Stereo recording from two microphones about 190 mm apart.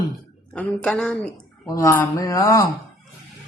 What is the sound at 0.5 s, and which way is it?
Speech, 5° left (ahead or behind).